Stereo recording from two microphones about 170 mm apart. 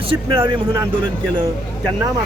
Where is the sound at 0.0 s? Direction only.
30° right (ahead or behind).